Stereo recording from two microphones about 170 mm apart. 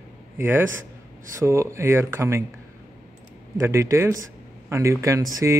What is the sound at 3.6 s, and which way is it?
Speech, 15° right (ahead or behind).